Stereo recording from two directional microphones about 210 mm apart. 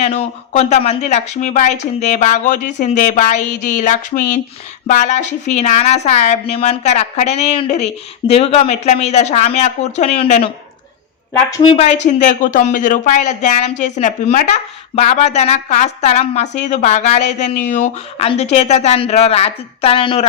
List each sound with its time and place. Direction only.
0.0 s speech: 30° left (ahead or behind)
11.5 s speech: 20° left (ahead or behind)
11.9 s speech: 35° left (ahead or behind)